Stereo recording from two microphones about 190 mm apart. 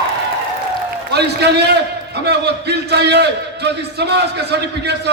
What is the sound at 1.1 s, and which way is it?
A man's voice, 60° right (ahead or behind).